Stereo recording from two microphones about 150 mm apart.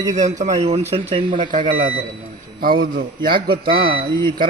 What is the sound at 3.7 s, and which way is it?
Speech, 35° right (ahead or behind).